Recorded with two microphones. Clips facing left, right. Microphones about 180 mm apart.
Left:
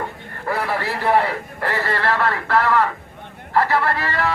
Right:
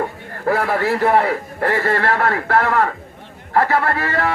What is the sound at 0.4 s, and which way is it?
A man's voice, 50° right (ahead or behind).